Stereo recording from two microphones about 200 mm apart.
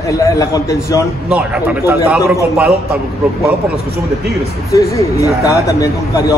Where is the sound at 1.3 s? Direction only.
10° right (ahead or behind).